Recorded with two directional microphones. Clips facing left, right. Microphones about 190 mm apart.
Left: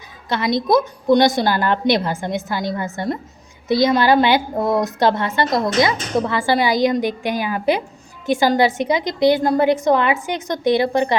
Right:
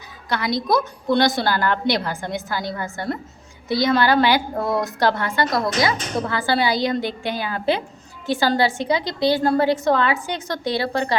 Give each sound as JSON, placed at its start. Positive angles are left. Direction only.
{"t": 0.3, "sound": "a woman's voice", "side_deg": 20}